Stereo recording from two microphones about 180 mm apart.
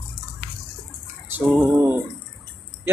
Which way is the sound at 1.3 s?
10° right (ahead or behind).